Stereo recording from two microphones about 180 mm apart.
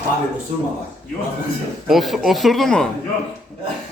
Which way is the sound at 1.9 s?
Centre (ahead or behind).